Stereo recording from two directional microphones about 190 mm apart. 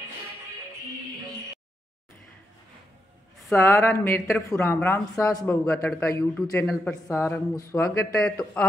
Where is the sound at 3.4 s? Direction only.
15° left (ahead or behind).